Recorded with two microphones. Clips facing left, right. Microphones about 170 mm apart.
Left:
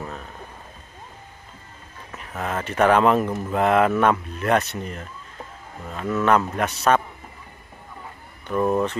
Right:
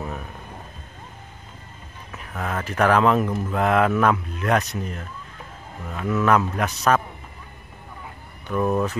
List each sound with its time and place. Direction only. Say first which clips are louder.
2.1 s speech: left 1 dB; centre (ahead or behind)
8.5 s speech: left 1 dB; centre (ahead or behind)